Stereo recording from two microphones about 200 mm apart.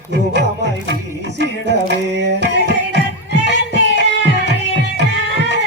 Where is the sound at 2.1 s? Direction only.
60° right (ahead or behind).